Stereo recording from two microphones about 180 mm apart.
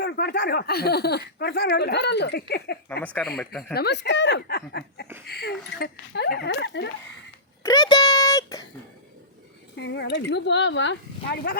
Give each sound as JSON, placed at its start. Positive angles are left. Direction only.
{"t": 0.0, "sound": "speech", "side_deg": 65}
{"t": 3.0, "sound": "speech", "side_deg": 5}
{"t": 3.8, "sound": "speech", "side_deg": 70}
{"t": 7.6, "sound": "a sound", "side_deg": 20}
{"t": 9.7, "sound": "speech", "side_deg": 75}